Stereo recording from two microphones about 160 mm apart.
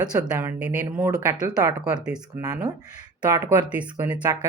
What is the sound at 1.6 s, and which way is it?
Speech, 20° right (ahead or behind).